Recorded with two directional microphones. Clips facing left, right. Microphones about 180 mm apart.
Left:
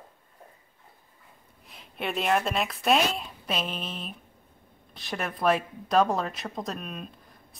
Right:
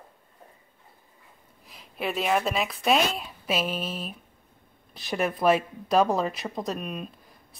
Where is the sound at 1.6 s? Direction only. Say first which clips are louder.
Right 2 dB; centre (ahead or behind).